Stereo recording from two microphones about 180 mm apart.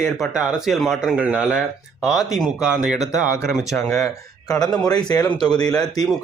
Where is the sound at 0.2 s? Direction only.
Centre (ahead or behind).